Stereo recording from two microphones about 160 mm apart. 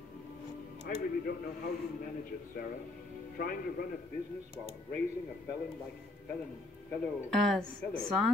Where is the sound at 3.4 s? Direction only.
70° left (ahead or behind).